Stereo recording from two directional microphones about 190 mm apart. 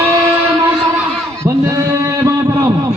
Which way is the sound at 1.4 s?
15° right (ahead or behind).